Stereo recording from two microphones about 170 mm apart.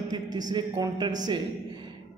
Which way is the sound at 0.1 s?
25° right (ahead or behind).